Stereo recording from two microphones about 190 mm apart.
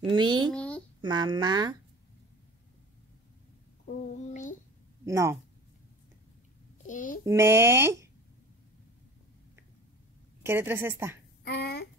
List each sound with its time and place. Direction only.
0.0 s speech: 25° right (ahead or behind)
0.5 s a sound: 5° left (ahead or behind)
1.0 s speech: 20° right (ahead or behind)
4.3 s a child's voice: 40° left (ahead or behind)
5.0 s speech: 15° right (ahead or behind)
6.9 s a child's voice: 45° left (ahead or behind)
7.2 s speech: 15° right (ahead or behind)
10.4 s speech: 15° right (ahead or behind)
11.4 s speech: 60° left (ahead or behind)